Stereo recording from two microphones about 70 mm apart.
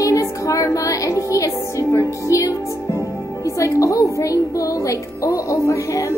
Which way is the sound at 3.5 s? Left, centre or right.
Left.